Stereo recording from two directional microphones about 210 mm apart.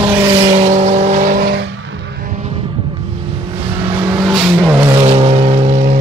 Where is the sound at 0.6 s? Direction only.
35° right (ahead or behind).